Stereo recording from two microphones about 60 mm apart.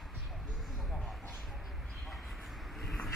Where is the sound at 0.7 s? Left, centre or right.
Centre.